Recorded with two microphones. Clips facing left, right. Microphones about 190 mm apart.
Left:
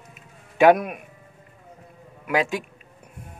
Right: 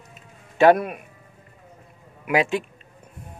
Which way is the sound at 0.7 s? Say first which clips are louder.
Right 1 dB; 5° left (ahead or behind).